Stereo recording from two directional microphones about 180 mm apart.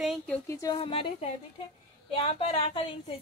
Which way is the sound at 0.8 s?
30° left (ahead or behind).